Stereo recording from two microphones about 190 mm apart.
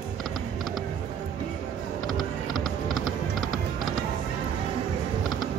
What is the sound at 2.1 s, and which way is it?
Music, centre (ahead or behind).